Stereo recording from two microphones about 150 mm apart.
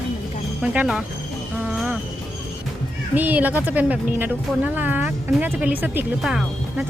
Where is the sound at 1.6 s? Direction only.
5° right (ahead or behind).